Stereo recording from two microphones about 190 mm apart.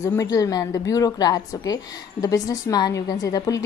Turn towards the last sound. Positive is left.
turn(degrees=20)  # may be behind; listen again after turning